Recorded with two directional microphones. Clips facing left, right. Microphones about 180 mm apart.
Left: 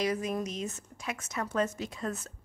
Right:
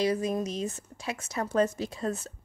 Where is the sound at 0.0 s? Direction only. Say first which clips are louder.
Right 3 dB; 30° right (ahead or behind).